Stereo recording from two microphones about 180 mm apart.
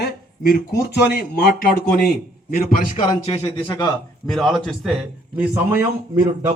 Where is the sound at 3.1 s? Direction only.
20° left (ahead or behind).